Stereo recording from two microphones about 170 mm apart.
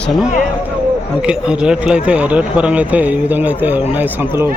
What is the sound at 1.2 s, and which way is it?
Speech, 5° right (ahead or behind).